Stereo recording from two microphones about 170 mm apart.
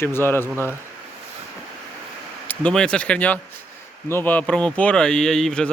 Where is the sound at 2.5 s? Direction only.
5° left (ahead or behind).